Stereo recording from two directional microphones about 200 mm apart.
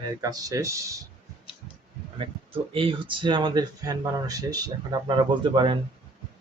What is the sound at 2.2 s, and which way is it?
Speech, 25° right (ahead or behind).